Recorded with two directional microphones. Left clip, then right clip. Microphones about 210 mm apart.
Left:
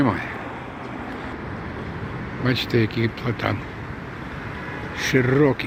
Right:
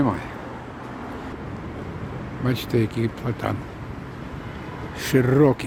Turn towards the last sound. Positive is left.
turn(degrees=-15)  # may be behind; listen again after turning